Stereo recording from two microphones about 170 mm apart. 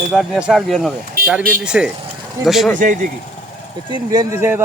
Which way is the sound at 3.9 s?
20° right (ahead or behind).